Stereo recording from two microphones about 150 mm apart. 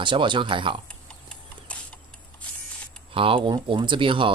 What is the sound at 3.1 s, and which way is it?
Speech, 35° right (ahead or behind).